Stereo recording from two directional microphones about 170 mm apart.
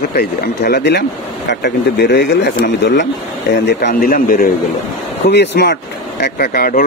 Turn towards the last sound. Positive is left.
turn(degrees=60)  # may be behind; listen again after turning